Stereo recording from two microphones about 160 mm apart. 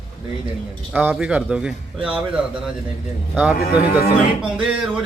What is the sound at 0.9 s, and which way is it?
A man's voice, 10° right (ahead or behind).